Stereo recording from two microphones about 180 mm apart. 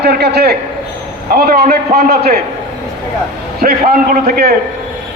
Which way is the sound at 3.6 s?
55° right (ahead or behind).